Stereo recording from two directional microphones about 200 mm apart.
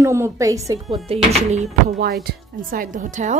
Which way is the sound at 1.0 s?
35° right (ahead or behind).